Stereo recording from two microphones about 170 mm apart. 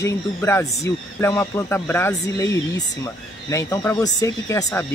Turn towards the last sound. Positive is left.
turn(degrees=20)  # may be behind; listen again after turning